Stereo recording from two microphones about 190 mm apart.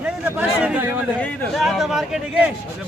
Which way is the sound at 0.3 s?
10° right (ahead or behind).